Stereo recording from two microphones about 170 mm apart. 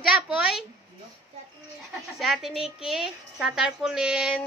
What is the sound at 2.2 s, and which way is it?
A woman's voice, centre (ahead or behind).